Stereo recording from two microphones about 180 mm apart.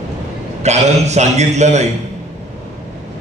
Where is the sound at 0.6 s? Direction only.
40° right (ahead or behind).